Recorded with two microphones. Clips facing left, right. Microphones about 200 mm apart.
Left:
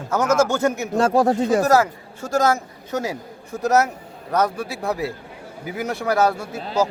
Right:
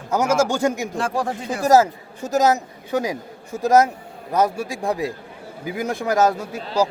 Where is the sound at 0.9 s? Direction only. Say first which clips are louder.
Left 7 dB; 40° left (ahead or behind).